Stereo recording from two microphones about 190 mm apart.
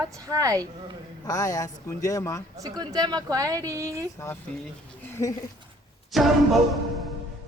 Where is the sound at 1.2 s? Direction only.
20° left (ahead or behind).